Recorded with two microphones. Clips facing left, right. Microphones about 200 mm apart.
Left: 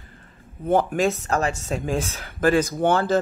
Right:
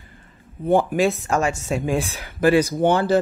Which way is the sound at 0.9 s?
40° left (ahead or behind).